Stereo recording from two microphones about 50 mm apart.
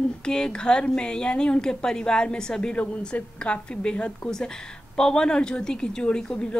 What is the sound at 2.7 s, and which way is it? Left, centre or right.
A woman's voice, left.